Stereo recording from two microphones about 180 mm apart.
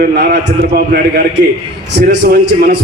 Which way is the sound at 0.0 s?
60° right (ahead or behind).